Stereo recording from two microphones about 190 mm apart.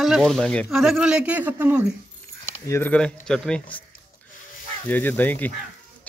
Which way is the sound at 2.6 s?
10° left (ahead or behind).